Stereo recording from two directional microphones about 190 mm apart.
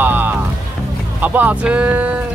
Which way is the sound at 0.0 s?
10° right (ahead or behind).